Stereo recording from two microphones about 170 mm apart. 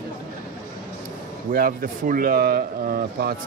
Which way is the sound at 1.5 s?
60° right (ahead or behind).